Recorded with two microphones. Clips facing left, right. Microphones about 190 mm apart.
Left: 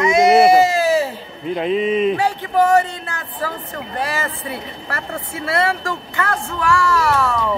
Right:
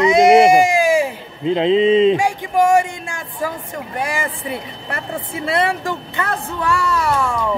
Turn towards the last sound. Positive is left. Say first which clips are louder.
# left 1 dB
turn(degrees=-15)  # may be behind; listen again after turning